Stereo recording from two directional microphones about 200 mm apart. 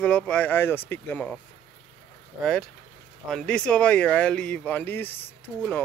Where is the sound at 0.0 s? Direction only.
5° left (ahead or behind).